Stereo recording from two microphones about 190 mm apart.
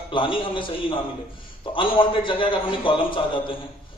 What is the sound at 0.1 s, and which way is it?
A man's voice, 25° left (ahead or behind).